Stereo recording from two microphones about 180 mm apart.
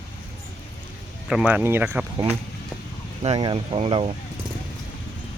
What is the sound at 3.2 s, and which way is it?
Speech, 30° right (ahead or behind).